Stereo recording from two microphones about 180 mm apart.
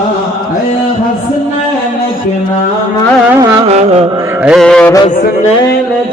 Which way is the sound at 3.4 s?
20° right (ahead or behind).